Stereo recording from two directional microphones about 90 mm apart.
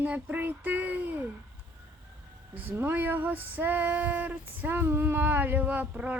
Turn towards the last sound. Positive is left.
turn(degrees=-15)  # may be behind; listen again after turning